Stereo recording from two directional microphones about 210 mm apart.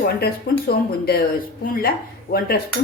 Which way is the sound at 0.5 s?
50° left (ahead or behind).